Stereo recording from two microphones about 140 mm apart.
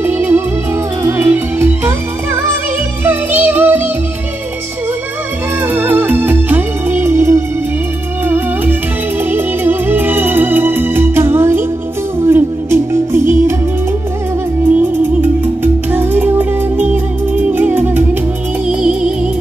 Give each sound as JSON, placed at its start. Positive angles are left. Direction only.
{"t": 0.0, "sound": "music", "side_deg": -15}
{"t": 3.0, "sound": "music", "side_deg": -15}
{"t": 5.7, "sound": "music", "side_deg": -15}
{"t": 9.2, "sound": "music", "side_deg": -15}
{"t": 14.7, "sound": "music", "side_deg": -15}